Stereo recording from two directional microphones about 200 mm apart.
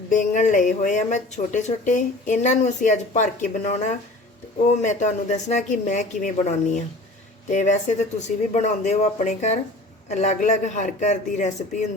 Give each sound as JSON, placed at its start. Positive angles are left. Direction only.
{"t": 0.1, "sound": "speech", "side_deg": 40}